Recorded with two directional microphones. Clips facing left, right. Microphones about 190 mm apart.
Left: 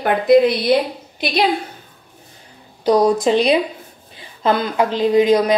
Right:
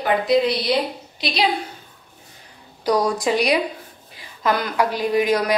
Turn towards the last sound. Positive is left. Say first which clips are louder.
# left 6 dB
turn(degrees=25)  # may be behind; listen again after turning